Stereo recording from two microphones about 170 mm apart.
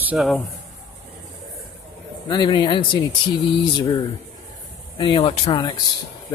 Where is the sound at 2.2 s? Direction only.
25° left (ahead or behind).